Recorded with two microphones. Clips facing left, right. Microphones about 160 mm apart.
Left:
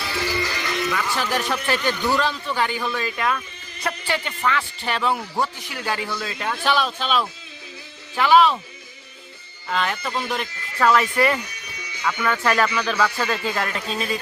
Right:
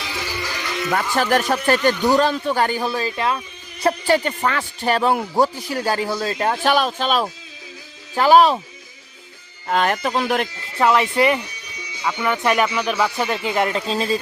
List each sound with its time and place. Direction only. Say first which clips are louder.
0.1 s music: left 5 dB; 10° right (ahead or behind)
1.1 s a man's voice: right 6 dB; 45° right (ahead or behind); by 3.4 s 25° right (ahead or behind)
3.8 s a man's voice: right 9 dB; 40° right (ahead or behind)
9.6 s a man's voice: right 5 dB; 50° right (ahead or behind)
10.8 s speech: right 2 dB; 20° right (ahead or behind)